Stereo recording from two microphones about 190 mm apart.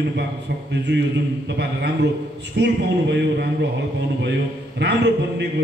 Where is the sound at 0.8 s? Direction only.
65° right (ahead or behind).